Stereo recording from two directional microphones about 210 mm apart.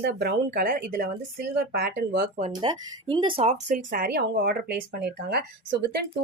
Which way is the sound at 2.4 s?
25° right (ahead or behind).